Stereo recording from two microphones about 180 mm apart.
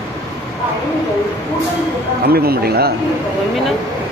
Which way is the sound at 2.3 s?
60° right (ahead or behind).